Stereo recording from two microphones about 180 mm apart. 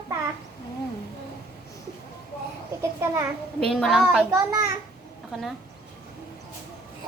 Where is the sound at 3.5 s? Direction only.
5° left (ahead or behind).